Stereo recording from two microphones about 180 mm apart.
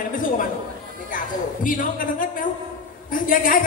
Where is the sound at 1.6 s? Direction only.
50° left (ahead or behind).